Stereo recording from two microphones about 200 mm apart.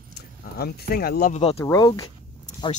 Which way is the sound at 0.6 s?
50° left (ahead or behind).